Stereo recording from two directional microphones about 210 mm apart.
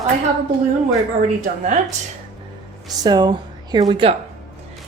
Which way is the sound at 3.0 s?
20° right (ahead or behind).